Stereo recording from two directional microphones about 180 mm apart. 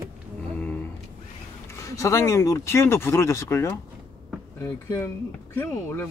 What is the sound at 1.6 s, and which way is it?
Speech, 15° left (ahead or behind).